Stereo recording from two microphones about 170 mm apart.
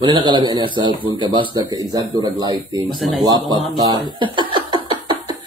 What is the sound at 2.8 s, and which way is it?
Speech, centre (ahead or behind).